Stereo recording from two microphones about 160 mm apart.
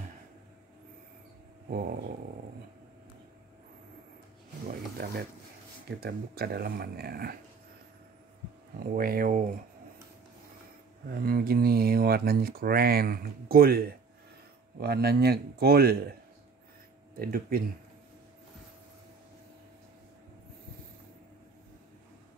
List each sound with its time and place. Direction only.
4.6 s a sound: 70° right (ahead or behind)
5.9 s speech: 80° right
8.7 s speech: 70° right (ahead or behind)
11.2 s speech: 70° right (ahead or behind)
17.2 s speech: 65° right (ahead or behind)